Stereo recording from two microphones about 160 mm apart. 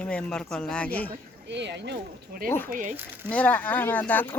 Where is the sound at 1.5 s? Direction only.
90° right.